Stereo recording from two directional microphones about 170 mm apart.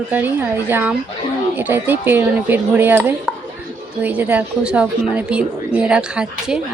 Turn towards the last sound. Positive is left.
turn(degrees=-5)  # may be behind; listen again after turning